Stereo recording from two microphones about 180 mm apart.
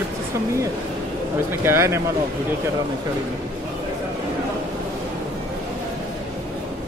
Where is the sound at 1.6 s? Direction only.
15° right (ahead or behind).